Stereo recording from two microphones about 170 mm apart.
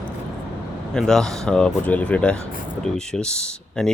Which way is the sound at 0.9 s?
5° left (ahead or behind).